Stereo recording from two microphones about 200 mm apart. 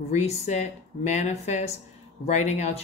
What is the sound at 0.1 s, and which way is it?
Speech, 35° left (ahead or behind).